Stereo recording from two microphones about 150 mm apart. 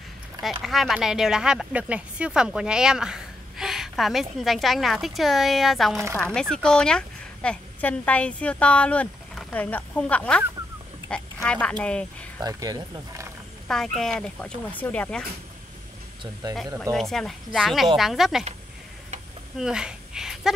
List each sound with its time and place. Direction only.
0.4 s speech: centre (ahead or behind)
11.4 s speech: 5° left (ahead or behind)
12.4 s speech: 25° right (ahead or behind)
13.7 s speech: centre (ahead or behind)
16.9 s speech: centre (ahead or behind)
19.6 s a sound: 5° right (ahead or behind)